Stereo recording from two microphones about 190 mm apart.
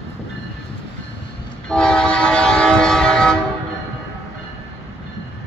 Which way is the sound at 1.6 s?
5° left (ahead or behind).